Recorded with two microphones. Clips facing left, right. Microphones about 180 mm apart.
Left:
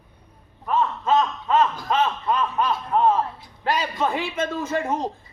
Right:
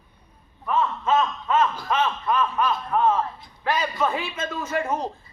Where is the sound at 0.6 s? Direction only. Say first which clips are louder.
Left 1 dB; 35° left (ahead or behind).